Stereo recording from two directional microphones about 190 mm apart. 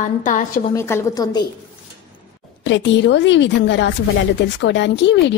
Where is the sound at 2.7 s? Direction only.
70° left (ahead or behind).